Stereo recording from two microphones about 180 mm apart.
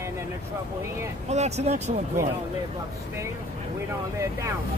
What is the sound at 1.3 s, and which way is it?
Speech, 40° right (ahead or behind).